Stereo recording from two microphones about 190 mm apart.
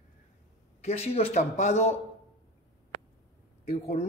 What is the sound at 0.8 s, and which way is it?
Speech, 30° left (ahead or behind).